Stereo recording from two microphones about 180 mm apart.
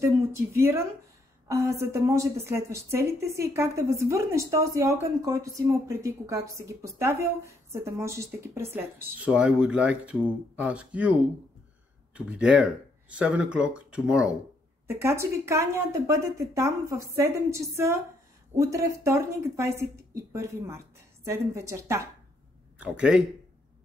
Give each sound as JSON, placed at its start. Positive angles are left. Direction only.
{"t": 0.0, "sound": "a woman's voice", "side_deg": -15}
{"t": 22.8, "sound": "speech", "side_deg": -5}